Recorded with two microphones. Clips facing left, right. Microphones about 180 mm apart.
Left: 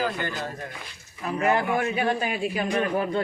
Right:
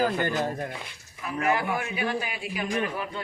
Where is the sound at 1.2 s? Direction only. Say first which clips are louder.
Left 3 dB; 35° left (ahead or behind).